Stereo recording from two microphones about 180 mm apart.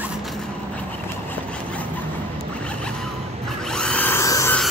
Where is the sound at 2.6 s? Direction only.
5° left (ahead or behind).